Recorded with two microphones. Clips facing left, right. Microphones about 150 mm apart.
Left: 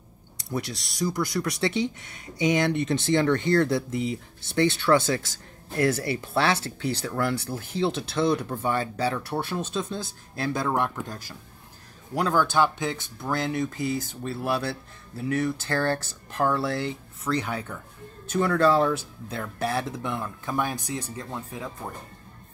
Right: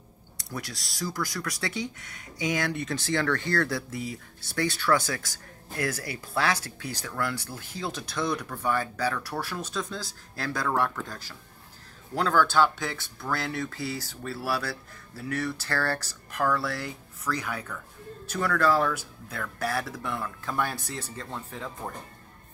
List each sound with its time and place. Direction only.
0.4 s speech: 25° left (ahead or behind)